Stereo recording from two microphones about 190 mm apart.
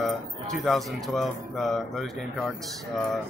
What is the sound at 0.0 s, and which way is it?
Speech, centre (ahead or behind).